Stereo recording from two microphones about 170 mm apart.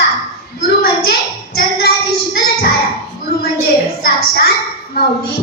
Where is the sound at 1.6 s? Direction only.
70° left (ahead or behind).